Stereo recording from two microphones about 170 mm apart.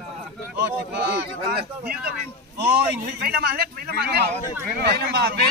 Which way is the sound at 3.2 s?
65° right (ahead or behind).